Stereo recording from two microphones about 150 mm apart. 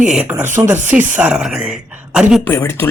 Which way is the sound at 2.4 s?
15° left (ahead or behind).